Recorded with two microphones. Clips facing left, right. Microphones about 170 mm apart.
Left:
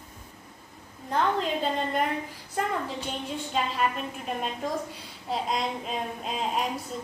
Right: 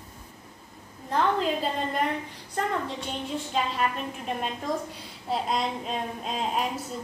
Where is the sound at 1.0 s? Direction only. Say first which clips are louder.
Right 1 dB; centre (ahead or behind).